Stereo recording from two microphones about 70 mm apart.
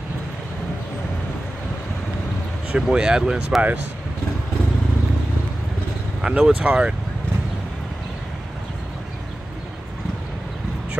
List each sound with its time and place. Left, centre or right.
2.7 s speech: centre
6.2 s speech: centre